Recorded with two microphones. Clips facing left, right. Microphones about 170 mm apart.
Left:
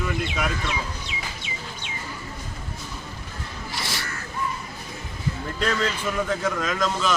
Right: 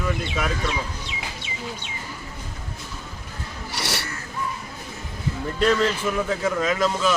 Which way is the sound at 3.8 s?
70° right (ahead or behind).